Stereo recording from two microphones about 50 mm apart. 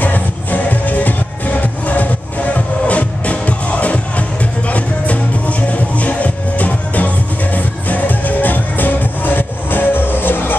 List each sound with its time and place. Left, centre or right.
0.0 s music: left